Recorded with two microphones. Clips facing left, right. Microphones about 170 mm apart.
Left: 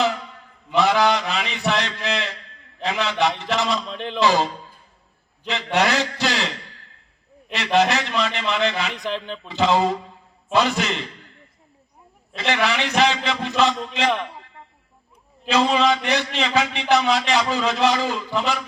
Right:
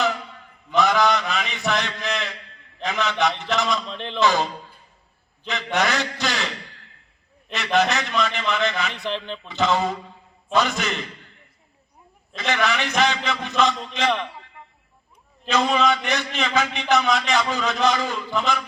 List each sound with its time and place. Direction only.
0.7 s mantra: 30° left (ahead or behind)
2.8 s a man's voice: 30° left (ahead or behind)
3.8 s speech: 10° left (ahead or behind)
4.2 s a man's voice: 30° left (ahead or behind)
5.5 s a man's voice: 30° left (ahead or behind)
7.5 s a man's voice: 30° left (ahead or behind)
8.9 s speech: 10° left (ahead or behind)
9.5 s a man's voice: 30° left (ahead or behind)
12.4 s a man's voice: 30° left (ahead or behind)
15.4 s a man's voice: 30° left (ahead or behind)